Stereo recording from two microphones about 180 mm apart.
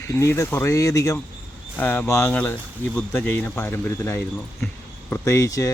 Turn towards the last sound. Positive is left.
turn(degrees=20)  # may be behind; listen again after turning